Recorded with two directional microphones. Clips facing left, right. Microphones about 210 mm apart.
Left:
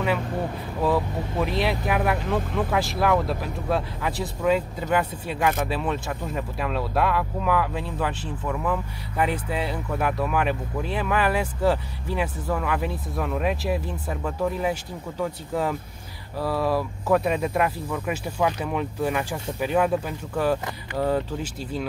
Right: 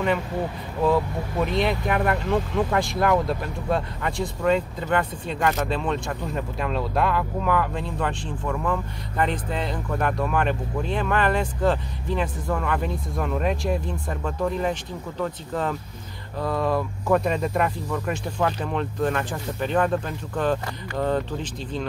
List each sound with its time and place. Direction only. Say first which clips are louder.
0.8 s speech: right 2 dB; centre (ahead or behind)